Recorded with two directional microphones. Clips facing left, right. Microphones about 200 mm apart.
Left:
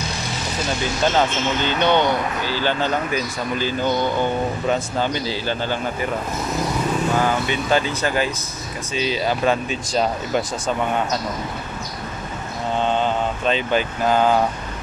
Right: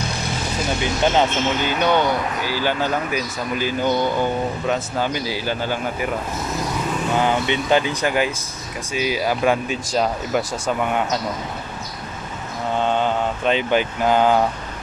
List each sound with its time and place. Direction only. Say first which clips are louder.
1.0 s speech: right 1 dB; 15° right (ahead or behind)
7.2 s speech: right 1 dB; 20° right (ahead or behind)
13.0 s speech: right 1 dB; 15° right (ahead or behind)